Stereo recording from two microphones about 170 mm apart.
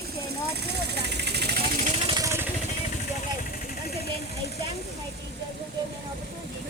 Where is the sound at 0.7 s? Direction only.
80° right.